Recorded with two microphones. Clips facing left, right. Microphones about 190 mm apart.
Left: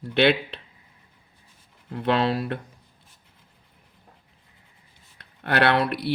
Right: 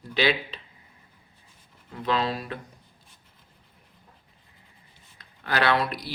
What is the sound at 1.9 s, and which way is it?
Speech, 65° left (ahead or behind).